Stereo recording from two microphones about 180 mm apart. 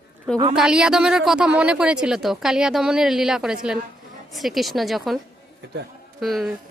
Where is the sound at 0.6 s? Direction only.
5° right (ahead or behind).